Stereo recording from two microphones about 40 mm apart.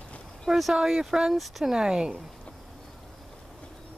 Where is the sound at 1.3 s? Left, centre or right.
Centre.